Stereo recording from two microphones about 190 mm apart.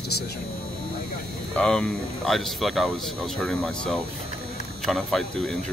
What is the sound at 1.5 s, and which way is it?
Speech, 5° left (ahead or behind).